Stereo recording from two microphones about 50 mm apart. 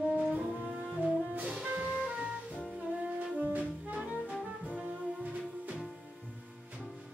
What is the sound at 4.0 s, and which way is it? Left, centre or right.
Music, right.